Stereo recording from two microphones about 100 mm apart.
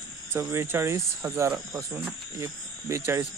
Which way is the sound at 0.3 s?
25° right (ahead or behind).